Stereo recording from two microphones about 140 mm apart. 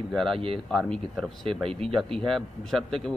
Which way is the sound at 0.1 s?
Centre (ahead or behind).